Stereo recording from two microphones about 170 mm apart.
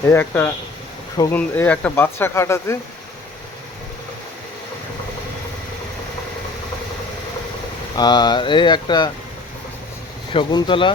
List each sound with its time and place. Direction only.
0.1 s speech: 15° left (ahead or behind)
1.4 s speech: 10° left (ahead or behind)
7.9 s speech: 25° left (ahead or behind)
10.3 s speech: 30° left (ahead or behind)